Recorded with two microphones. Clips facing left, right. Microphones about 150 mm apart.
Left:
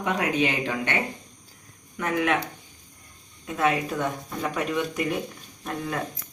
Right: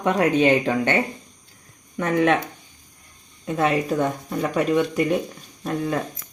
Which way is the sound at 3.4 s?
30° right (ahead or behind).